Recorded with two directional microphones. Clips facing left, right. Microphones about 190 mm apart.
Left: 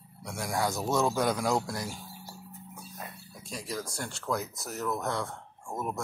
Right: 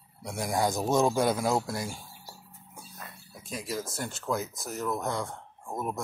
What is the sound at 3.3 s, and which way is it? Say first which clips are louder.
Speech: right 3 dB; 5° right (ahead or behind).